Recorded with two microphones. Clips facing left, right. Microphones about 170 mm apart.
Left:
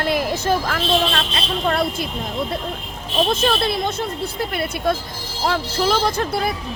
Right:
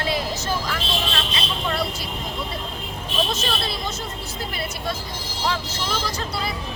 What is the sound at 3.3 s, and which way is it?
Speech, 55° left (ahead or behind).